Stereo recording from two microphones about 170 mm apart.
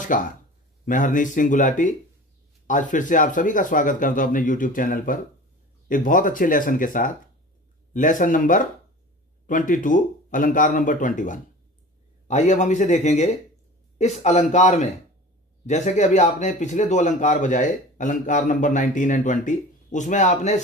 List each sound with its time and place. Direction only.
0.1 s speech: 50° left (ahead or behind)